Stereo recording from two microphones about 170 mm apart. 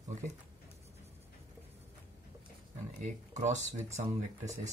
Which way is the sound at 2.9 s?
45° right (ahead or behind).